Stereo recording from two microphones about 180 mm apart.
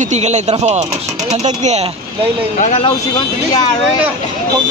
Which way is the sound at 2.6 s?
35° left (ahead or behind).